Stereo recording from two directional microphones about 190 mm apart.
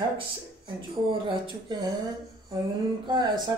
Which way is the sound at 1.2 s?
25° right (ahead or behind).